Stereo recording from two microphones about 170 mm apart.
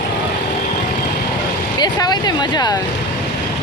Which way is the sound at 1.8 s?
25° left (ahead or behind).